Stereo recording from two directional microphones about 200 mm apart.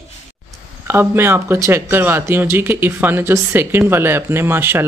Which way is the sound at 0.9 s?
10° right (ahead or behind).